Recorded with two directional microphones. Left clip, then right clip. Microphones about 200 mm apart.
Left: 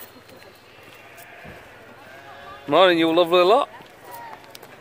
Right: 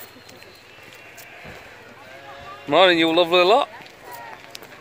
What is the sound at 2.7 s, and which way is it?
Speech, 10° left (ahead or behind).